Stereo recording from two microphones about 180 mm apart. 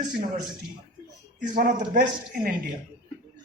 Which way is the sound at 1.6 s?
45° right (ahead or behind).